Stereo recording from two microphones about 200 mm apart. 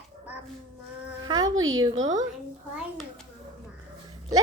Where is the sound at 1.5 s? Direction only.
90° right.